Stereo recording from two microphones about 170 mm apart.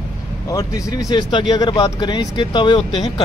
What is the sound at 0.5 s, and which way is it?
Speech, 20° left (ahead or behind).